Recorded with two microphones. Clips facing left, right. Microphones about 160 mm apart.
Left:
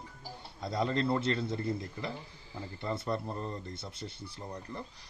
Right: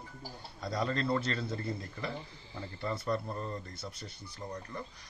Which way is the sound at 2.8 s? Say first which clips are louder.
Even; 20° left (ahead or behind).